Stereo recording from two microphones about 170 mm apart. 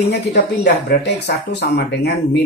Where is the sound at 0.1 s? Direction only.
80° left.